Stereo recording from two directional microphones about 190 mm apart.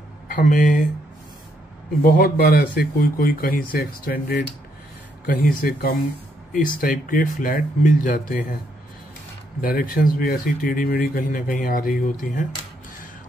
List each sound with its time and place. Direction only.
0.3 s speech: 45° left (ahead or behind)
2.0 s speech: 50° left (ahead or behind)
9.6 s speech: 50° left (ahead or behind)